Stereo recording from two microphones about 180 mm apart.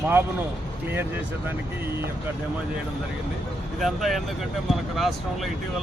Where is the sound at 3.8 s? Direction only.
Centre (ahead or behind).